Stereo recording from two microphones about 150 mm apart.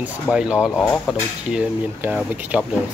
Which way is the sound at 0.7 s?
5° left (ahead or behind).